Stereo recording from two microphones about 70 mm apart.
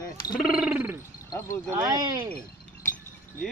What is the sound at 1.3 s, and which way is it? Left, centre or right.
Speech, left.